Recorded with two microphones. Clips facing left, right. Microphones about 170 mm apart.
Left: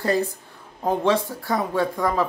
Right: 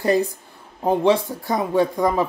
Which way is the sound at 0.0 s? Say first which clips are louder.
Right 3 dB; 15° right (ahead or behind).